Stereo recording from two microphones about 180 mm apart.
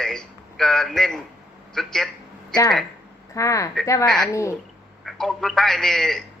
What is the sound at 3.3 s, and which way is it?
Speech, 15° left (ahead or behind).